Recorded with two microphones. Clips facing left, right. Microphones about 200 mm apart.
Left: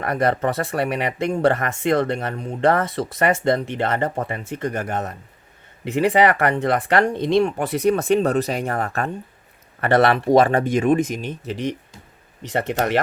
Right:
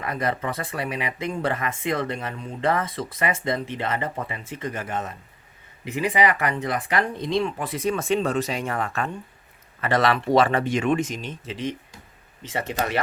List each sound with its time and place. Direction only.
0.0 s speech: 65° left (ahead or behind)
4.1 s speech: 50° left (ahead or behind)
5.8 s speech: 65° left (ahead or behind)
8.7 s speech: 40° left (ahead or behind)
9.8 s speech: 60° left (ahead or behind)
10.2 s speech: 50° left (ahead or behind)